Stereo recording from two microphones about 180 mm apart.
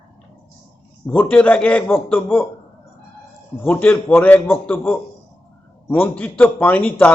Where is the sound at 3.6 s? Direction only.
10° left (ahead or behind).